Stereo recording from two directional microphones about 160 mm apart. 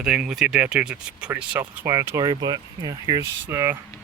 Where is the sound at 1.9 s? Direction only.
20° right (ahead or behind).